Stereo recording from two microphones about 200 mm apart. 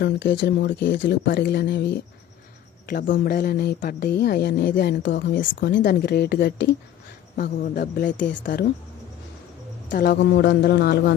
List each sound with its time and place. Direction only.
0.0 s speech: 60° left (ahead or behind)
5.8 s speech: 50° left (ahead or behind)
9.9 s speech: 50° left (ahead or behind)